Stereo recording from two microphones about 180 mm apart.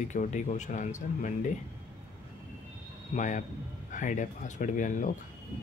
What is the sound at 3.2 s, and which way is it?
Speech, 45° left (ahead or behind).